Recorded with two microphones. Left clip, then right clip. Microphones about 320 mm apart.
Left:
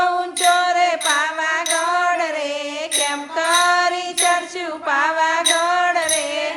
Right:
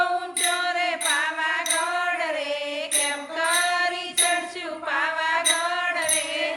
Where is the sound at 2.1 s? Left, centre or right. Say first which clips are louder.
Left 5 dB; centre.